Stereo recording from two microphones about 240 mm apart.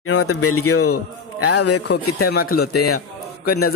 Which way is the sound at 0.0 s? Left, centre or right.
Left.